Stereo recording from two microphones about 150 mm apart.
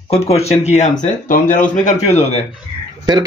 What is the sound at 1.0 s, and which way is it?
Speech, 65° left (ahead or behind).